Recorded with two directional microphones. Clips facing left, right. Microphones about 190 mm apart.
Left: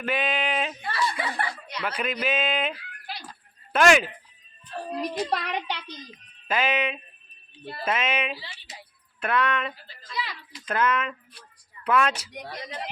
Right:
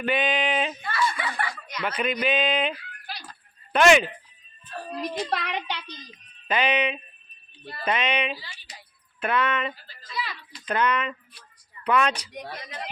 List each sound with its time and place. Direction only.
0.0 s a sound: centre (ahead or behind)
0.9 s snicker: 35° left (ahead or behind)
1.8 s a child's voice: centre (ahead or behind)
12.5 s speech: 25° left (ahead or behind)